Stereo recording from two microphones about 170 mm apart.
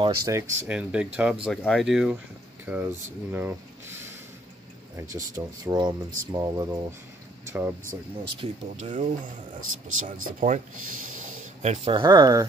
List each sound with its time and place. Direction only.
0.0 s speech: 25° right (ahead or behind)
8.4 s speech: 40° right (ahead or behind); by 12.4 s 20° right (ahead or behind)